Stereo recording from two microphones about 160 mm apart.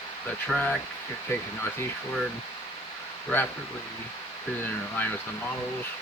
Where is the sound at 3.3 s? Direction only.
10° left (ahead or behind).